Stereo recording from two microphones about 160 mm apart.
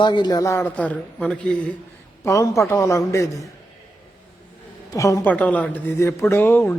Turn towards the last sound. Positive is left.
turn(degrees=15)  # may be behind; listen again after turning